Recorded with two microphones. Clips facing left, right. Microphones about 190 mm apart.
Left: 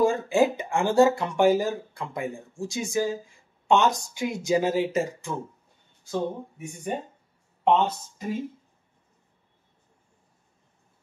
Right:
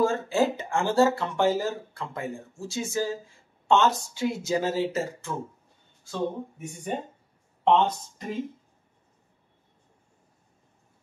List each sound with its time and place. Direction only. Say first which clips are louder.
0.0 s speech: left 2 dB; 15° left (ahead or behind)
6.6 s speech: left 2 dB; 10° left (ahead or behind)